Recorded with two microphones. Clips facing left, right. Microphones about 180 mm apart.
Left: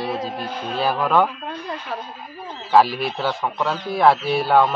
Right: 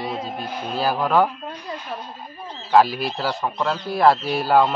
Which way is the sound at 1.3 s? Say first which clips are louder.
Left 2 dB; 70° left (ahead or behind).